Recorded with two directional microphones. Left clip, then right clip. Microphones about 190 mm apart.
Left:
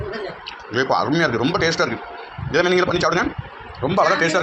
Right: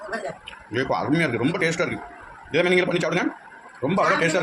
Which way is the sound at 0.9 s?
5° left (ahead or behind).